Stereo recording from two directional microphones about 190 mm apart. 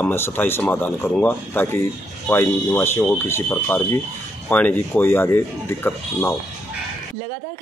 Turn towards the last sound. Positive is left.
turn(degrees=10)  # may be behind; listen again after turning